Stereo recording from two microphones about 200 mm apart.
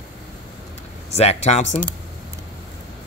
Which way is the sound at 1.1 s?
30° left (ahead or behind).